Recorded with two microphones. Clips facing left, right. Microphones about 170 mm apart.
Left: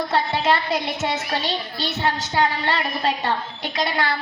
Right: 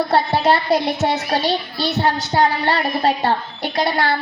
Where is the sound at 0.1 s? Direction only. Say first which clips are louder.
Right 3 dB; 40° right (ahead or behind).